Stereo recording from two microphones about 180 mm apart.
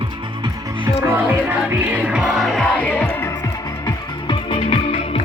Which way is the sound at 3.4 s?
25° left (ahead or behind).